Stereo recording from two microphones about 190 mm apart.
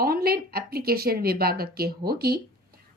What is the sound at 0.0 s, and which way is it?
A woman's voice, 55° right (ahead or behind).